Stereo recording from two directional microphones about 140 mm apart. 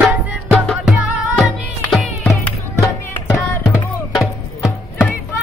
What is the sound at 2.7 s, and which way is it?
Music, 20° left (ahead or behind).